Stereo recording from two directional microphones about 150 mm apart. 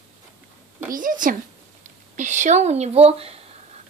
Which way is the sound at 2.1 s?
55° right (ahead or behind).